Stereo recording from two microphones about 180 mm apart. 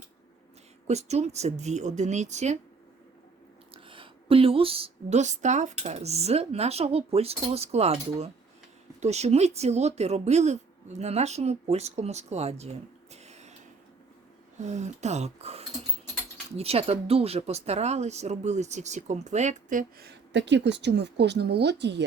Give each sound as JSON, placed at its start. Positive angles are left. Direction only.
{"t": 0.9, "sound": "a woman's voice", "side_deg": -40}
{"t": 3.8, "sound": "a woman's voice", "side_deg": -30}
{"t": 14.6, "sound": "a woman's voice", "side_deg": -40}
{"t": 20.0, "sound": "a woman's voice", "side_deg": -70}